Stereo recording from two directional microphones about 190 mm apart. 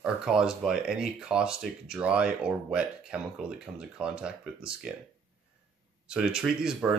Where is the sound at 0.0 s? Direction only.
5° right (ahead or behind).